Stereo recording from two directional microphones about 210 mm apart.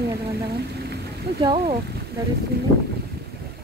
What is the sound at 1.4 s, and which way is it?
Speech, 20° right (ahead or behind).